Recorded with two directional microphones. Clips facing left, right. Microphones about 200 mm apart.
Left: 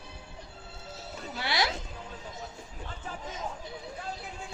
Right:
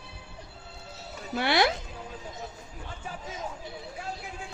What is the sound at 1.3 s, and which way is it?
Speech, 60° right (ahead or behind).